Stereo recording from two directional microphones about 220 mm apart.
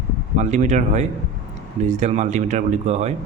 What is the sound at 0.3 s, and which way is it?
Speech, 30° right (ahead or behind).